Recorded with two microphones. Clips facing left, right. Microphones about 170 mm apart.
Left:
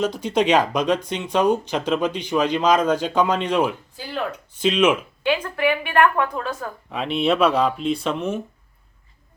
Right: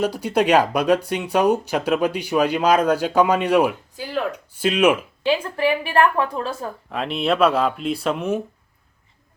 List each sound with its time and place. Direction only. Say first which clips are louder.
0.0 s speech: right 1 dB; 10° right (ahead or behind)
5.2 s a woman's voice: right 1 dB; 30° right (ahead or behind)
6.9 s speech: left 1 dB; centre (ahead or behind)